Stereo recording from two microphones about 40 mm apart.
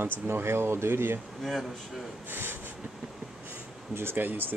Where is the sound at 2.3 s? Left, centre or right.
Right.